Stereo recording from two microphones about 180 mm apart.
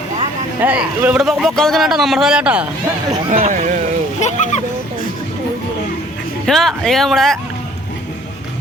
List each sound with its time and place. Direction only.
0.6 s speech: 10° right (ahead or behind)
3.2 s speech: 45° right (ahead or behind)
4.2 s a sound: 40° left (ahead or behind)
6.4 s speech: centre (ahead or behind)